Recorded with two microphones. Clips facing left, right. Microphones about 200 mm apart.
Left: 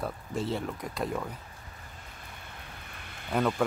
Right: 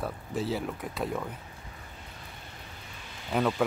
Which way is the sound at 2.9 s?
55° left (ahead or behind).